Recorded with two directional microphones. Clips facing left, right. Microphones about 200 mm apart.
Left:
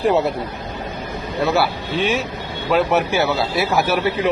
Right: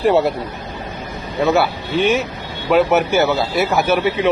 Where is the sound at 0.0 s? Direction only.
Centre (ahead or behind).